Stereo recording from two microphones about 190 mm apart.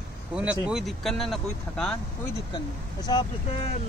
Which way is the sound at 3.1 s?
20° left (ahead or behind).